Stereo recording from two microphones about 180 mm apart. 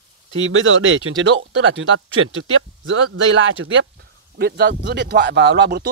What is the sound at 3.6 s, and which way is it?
Speech, 65° right (ahead or behind).